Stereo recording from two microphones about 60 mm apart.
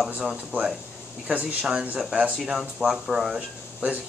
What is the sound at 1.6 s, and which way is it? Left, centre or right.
Speech, centre.